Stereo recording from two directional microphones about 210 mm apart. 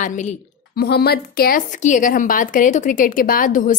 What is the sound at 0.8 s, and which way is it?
A woman's voice, 50° left (ahead or behind).